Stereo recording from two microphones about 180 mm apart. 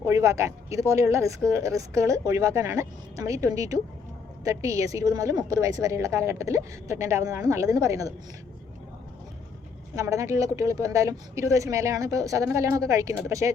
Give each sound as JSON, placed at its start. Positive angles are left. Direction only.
{"t": 0.0, "sound": "a woman's voice", "side_deg": -15}
{"t": 9.9, "sound": "a woman's voice", "side_deg": -15}